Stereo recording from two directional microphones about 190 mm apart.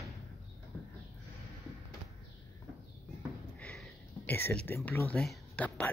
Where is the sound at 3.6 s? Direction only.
5° left (ahead or behind).